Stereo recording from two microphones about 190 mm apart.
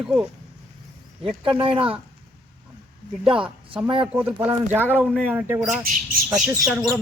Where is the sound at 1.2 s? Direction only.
25° right (ahead or behind).